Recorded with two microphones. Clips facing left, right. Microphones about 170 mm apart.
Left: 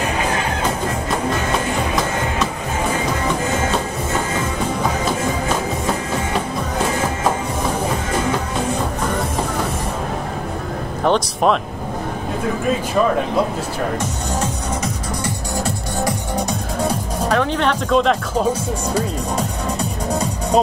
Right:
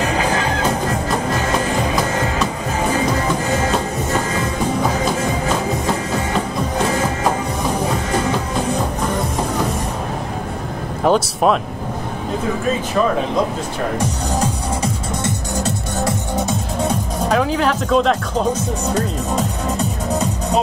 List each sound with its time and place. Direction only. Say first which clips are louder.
11.1 s speech: right 1 dB; 5° right (ahead or behind)
14.4 s music: right 2 dB; 25° right (ahead or behind)
17.3 s speech: right 1 dB; 5° right (ahead or behind)